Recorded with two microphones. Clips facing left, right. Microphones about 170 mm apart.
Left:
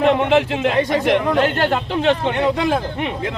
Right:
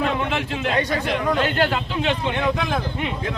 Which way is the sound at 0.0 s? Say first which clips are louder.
Left 8 dB; 70° left (ahead or behind).